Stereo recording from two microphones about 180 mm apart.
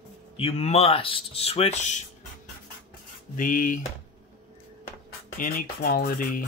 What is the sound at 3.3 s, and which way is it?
Speech, 50° left (ahead or behind).